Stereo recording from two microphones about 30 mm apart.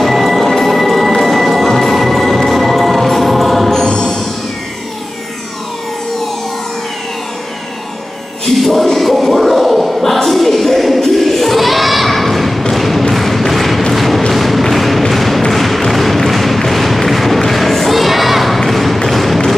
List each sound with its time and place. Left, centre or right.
0.0 s music: centre
3.9 s music: centre
8.5 s music: centre
10.0 s a sound: centre
12.7 s thump: centre
13.9 s a sound: centre
15.5 s thump: centre